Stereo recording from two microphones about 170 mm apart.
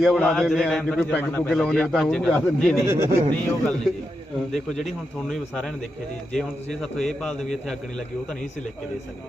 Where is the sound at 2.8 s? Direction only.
15° right (ahead or behind).